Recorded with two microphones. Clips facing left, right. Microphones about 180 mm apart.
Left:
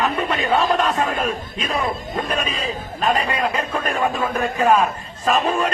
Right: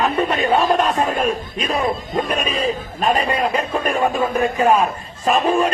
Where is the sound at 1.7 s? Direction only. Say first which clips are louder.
Right 3 dB; 20° right (ahead or behind).